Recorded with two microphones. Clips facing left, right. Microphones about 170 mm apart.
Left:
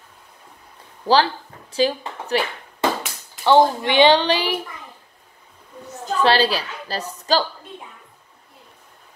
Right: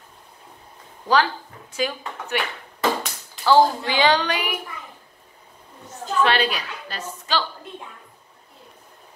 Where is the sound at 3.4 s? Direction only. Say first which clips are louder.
Left 2 dB; 25° left (ahead or behind).